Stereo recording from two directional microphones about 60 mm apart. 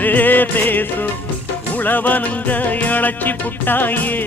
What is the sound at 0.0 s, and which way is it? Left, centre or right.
Music, left.